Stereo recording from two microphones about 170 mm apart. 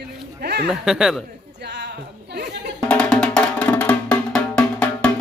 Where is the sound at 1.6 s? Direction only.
90° right.